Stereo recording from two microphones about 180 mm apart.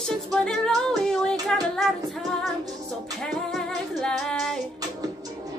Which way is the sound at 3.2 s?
Centre (ahead or behind).